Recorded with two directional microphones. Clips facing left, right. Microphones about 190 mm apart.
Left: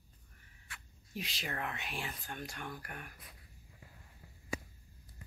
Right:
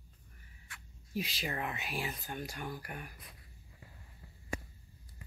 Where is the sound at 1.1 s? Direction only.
Centre (ahead or behind).